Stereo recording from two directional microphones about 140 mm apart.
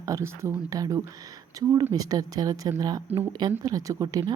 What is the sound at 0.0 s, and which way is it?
Speech, 20° right (ahead or behind).